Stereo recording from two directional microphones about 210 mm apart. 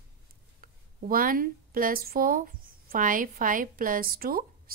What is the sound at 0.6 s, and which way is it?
A woman's voice, 40° right (ahead or behind).